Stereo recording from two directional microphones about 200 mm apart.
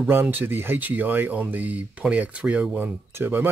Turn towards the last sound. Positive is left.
turn(degrees=-10)  # may be behind; listen again after turning